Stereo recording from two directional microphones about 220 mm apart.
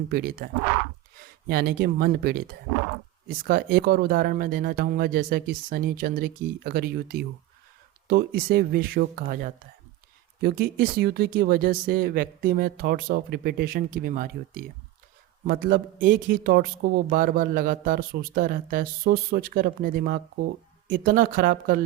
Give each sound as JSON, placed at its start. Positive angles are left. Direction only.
{"t": 0.1, "sound": "a man's voice", "side_deg": -40}